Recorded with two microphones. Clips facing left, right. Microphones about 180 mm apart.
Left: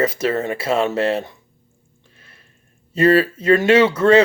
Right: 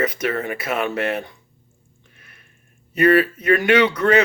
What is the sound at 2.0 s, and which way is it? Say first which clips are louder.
Music: left 2 dB; 30° left (ahead or behind).